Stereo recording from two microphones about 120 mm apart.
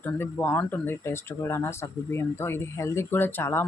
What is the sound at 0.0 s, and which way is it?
Speech, 15° left (ahead or behind).